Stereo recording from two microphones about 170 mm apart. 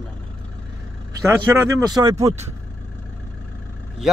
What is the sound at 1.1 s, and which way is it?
Speech, 20° right (ahead or behind).